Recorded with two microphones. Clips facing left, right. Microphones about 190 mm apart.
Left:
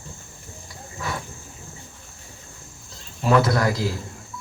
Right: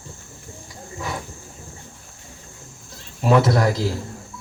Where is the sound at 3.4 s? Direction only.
25° right (ahead or behind).